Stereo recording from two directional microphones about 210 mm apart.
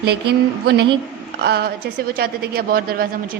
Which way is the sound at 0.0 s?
50° right (ahead or behind).